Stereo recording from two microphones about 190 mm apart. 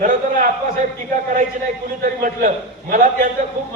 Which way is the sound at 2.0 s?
45° right (ahead or behind).